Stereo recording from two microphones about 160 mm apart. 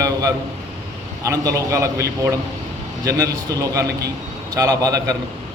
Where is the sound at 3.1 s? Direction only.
20° right (ahead or behind).